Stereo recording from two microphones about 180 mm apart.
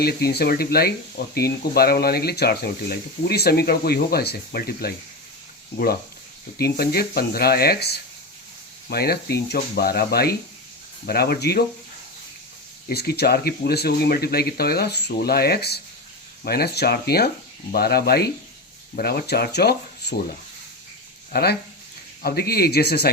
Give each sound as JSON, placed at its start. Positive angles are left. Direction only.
{"t": 0.0, "sound": "speech", "side_deg": 60}
{"t": 12.9, "sound": "speech", "side_deg": 65}
{"t": 21.3, "sound": "speech", "side_deg": 60}